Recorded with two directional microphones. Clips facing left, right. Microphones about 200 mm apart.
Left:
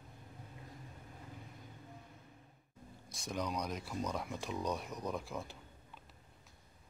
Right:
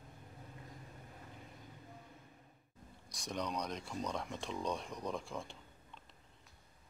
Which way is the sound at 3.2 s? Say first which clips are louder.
Left 1 dB; 5° left (ahead or behind).